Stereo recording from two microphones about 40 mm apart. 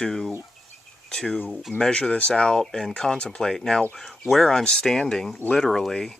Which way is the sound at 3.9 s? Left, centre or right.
Centre.